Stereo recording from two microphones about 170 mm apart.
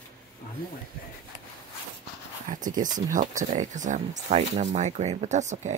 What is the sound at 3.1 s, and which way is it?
Speech, 50° right (ahead or behind).